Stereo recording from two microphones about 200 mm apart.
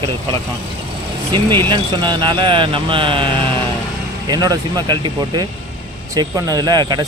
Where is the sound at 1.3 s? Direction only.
25° right (ahead or behind).